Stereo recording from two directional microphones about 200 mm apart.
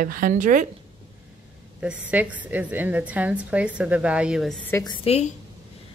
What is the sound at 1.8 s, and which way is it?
A woman's voice, 5° right (ahead or behind).